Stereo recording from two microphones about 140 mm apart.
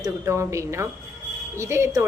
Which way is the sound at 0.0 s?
20° right (ahead or behind).